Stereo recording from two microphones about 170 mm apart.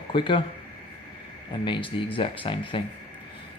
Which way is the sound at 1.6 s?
30° left (ahead or behind).